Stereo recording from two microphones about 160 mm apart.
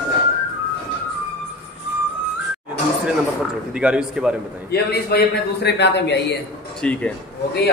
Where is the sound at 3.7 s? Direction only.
5° right (ahead or behind).